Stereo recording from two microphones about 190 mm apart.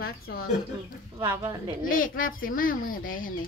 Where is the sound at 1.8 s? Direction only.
45° left (ahead or behind).